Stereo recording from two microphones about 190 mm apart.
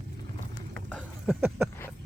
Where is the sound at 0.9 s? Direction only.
5° left (ahead or behind).